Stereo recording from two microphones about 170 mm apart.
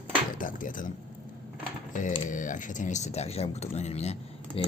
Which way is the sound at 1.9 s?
50° left (ahead or behind).